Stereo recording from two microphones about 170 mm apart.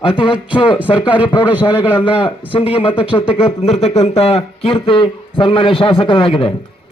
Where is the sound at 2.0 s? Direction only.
30° left (ahead or behind).